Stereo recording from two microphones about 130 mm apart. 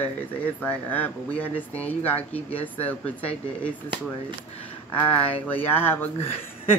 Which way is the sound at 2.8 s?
10° left (ahead or behind).